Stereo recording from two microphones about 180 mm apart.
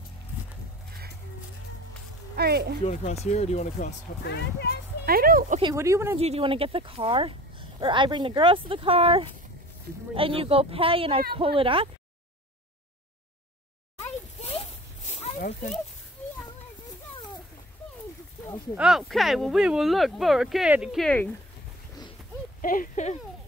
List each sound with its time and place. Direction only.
2.3 s speech: 60° right (ahead or behind)
2.8 s speech: 35° left (ahead or behind)
4.2 s speech: 65° left (ahead or behind)
5.0 s speech: 55° right (ahead or behind)
5.6 s speech: 20° right (ahead or behind)
6.1 s speech: 35° right (ahead or behind)
14.4 s a sound: 35° left (ahead or behind)
18.8 s speech: centre (ahead or behind)
22.6 s speech: 50° left (ahead or behind)